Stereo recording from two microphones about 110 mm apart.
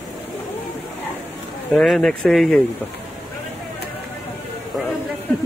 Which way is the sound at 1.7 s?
5° left (ahead or behind).